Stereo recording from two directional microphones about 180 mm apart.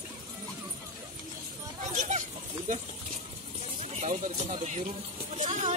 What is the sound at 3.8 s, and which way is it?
Speech, 35° right (ahead or behind).